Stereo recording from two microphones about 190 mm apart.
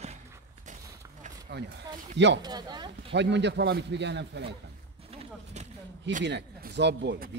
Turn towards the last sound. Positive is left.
turn(degrees=-65)  # may be behind; listen again after turning